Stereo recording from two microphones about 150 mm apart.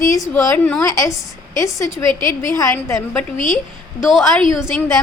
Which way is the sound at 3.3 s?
60° left (ahead or behind).